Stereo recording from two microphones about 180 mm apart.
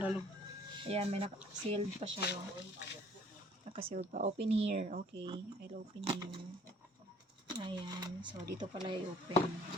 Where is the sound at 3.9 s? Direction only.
45° right (ahead or behind).